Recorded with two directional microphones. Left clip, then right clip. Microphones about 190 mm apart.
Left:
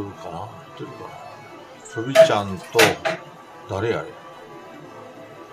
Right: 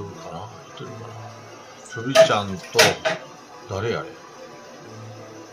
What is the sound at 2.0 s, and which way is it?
Speech, 25° left (ahead or behind).